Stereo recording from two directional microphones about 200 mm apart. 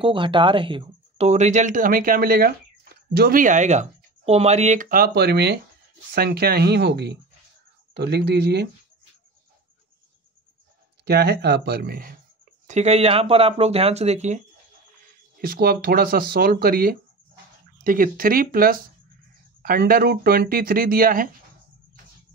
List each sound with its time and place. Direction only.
0.0 s speech: 25° right (ahead or behind); by 8.6 s 55° right (ahead or behind)
11.1 s speech: 55° right (ahead or behind)
12.6 s speech: 35° right (ahead or behind)
15.4 s speech: 50° right (ahead or behind)